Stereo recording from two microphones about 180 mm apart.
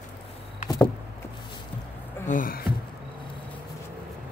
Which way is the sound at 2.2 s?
50° left (ahead or behind).